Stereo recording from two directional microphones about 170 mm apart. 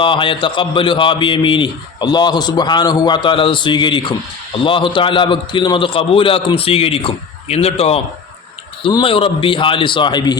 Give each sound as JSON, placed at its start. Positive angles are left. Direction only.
{"t": 0.0, "sound": "a man's voice", "side_deg": 30}